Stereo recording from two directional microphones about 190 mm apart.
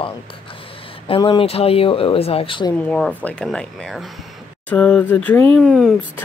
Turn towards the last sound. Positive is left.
turn(degrees=-5)  # may be behind; listen again after turning